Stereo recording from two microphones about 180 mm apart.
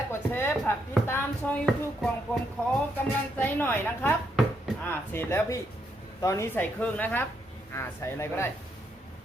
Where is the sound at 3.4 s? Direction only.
10° left (ahead or behind).